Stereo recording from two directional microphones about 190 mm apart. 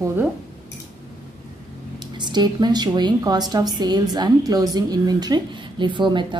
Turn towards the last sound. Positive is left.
turn(degrees=-25)  # may be behind; listen again after turning